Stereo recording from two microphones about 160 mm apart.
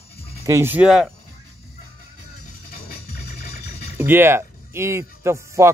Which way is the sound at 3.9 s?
15° right (ahead or behind).